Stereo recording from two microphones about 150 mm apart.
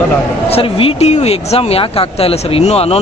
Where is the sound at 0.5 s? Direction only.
40° left (ahead or behind).